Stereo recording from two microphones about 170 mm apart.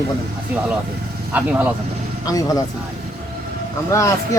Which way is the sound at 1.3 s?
10° right (ahead or behind).